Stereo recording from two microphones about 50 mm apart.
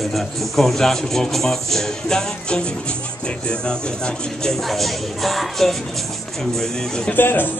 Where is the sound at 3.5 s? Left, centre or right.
Centre.